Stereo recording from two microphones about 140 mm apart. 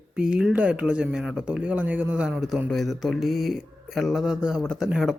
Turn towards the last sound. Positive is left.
turn(degrees=-5)  # may be behind; listen again after turning